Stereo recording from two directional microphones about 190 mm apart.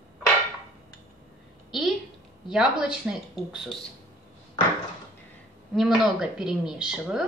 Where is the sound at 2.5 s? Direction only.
5° right (ahead or behind).